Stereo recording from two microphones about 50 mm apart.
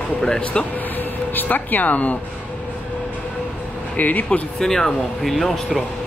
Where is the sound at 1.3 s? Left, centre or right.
Left.